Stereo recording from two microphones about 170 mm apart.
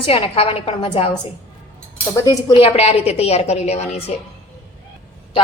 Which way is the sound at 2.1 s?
20° left (ahead or behind).